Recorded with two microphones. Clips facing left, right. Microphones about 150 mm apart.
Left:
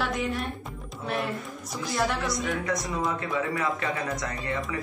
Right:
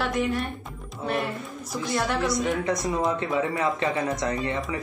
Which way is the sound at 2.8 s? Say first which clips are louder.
Right 4 dB; 20° right (ahead or behind).